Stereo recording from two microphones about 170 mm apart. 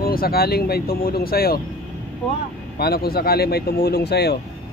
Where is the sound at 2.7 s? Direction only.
65° left (ahead or behind).